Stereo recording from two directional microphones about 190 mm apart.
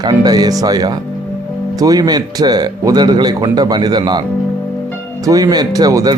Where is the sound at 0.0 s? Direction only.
20° right (ahead or behind).